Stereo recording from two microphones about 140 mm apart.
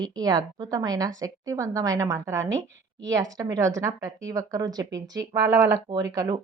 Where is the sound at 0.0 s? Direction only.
30° right (ahead or behind).